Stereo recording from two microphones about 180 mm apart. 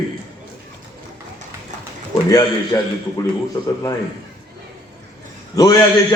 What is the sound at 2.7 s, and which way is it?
Speech, 20° left (ahead or behind).